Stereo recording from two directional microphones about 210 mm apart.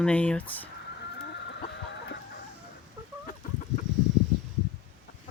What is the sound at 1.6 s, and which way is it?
Chicken, 55° left (ahead or behind).